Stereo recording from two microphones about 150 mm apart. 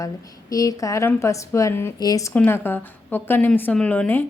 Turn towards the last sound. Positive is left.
turn(degrees=10)  # may be behind; listen again after turning